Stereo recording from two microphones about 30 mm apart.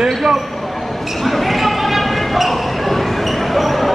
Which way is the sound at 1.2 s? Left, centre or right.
Centre.